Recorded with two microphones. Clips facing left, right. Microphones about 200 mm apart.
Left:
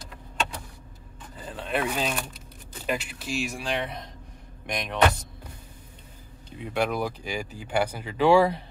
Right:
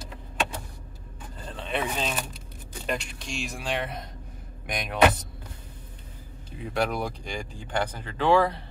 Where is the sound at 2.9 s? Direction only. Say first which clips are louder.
Left 2 dB; 5° left (ahead or behind).